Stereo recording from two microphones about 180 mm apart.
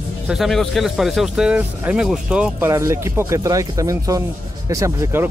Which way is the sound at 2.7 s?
15° right (ahead or behind).